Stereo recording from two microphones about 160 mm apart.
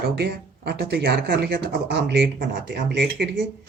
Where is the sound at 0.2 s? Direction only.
90° right.